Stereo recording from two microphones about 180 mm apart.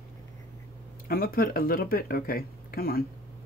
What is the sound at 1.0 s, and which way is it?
Speech, 55° left (ahead or behind).